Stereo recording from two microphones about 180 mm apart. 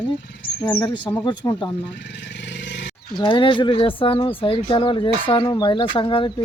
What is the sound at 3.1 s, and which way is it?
Speech, 25° left (ahead or behind).